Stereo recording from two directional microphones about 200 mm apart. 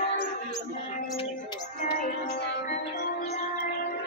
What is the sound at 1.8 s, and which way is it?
Music, 45° left (ahead or behind).